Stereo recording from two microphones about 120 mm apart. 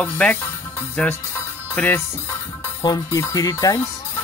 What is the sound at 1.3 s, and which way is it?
Music, 15° left (ahead or behind).